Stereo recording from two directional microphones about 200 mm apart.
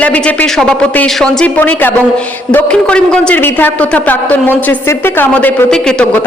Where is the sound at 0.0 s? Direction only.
5° left (ahead or behind).